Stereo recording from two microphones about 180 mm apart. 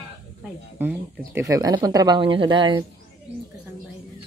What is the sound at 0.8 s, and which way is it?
Speech, 10° right (ahead or behind).